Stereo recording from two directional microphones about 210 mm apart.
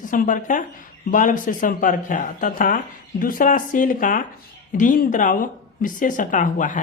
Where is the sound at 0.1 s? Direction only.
40° left (ahead or behind).